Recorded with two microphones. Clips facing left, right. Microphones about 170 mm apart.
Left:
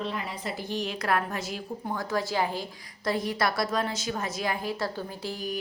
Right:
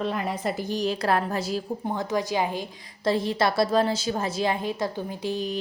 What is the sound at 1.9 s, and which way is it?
A woman's voice, 20° right (ahead or behind).